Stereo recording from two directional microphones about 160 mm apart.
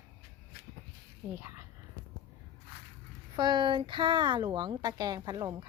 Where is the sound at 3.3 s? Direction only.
25° right (ahead or behind).